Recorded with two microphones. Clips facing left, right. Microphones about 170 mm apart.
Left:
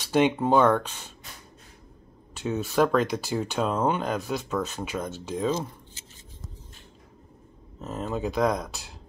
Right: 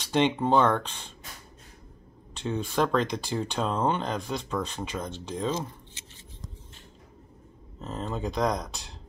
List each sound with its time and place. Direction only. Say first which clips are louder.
0.0 s speech: left 2 dB; 10° left (ahead or behind)
2.3 s speech: left 3 dB; 5° left (ahead or behind)
7.8 s speech: left 3 dB; 5° left (ahead or behind)